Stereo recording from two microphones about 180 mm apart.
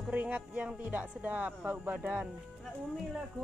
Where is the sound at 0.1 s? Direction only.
10° right (ahead or behind).